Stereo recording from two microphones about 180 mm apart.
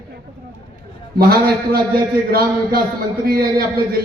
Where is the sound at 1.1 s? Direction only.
60° right (ahead or behind).